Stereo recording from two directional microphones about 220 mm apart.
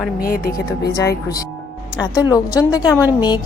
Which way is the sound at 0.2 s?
40° left (ahead or behind).